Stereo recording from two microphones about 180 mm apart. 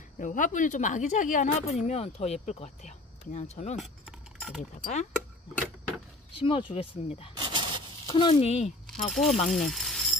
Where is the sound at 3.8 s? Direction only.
Centre (ahead or behind).